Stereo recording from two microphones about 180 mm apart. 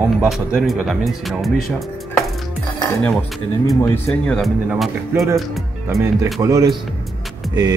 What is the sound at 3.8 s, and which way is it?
Speech, 5° left (ahead or behind).